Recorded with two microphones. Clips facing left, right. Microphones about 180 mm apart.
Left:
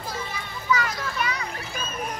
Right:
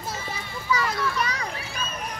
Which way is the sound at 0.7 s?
35° right (ahead or behind).